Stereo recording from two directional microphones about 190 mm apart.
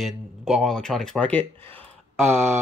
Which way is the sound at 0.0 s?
Centre (ahead or behind).